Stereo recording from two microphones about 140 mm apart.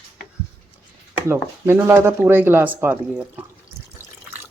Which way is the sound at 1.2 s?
15° right (ahead or behind).